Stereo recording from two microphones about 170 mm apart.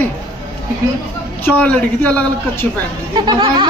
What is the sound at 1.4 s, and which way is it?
A man's voice, 5° left (ahead or behind).